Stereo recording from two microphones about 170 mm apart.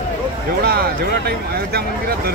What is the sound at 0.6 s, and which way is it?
Speech, 65° right (ahead or behind).